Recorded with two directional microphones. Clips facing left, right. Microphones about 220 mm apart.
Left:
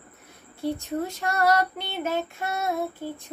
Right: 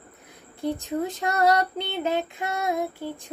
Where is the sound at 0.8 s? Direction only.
15° right (ahead or behind).